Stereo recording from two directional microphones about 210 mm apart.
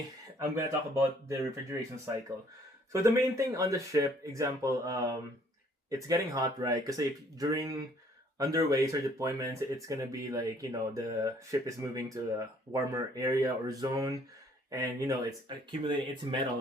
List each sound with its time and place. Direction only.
0.3 s speech: 15° right (ahead or behind)
2.9 s speech: 15° right (ahead or behind)